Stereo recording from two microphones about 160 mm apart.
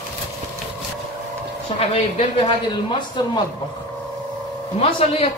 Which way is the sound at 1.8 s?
35° left (ahead or behind).